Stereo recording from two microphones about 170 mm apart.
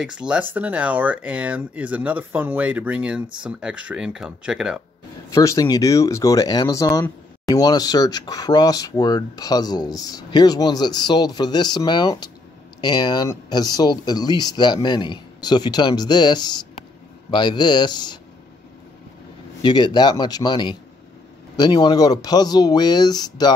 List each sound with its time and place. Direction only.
0.0 s speech: 5° right (ahead or behind)
5.3 s speech: 20° left (ahead or behind)
19.6 s speech: 25° left (ahead or behind)